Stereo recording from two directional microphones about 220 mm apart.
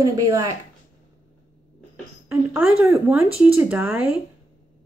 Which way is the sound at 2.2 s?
10° right (ahead or behind).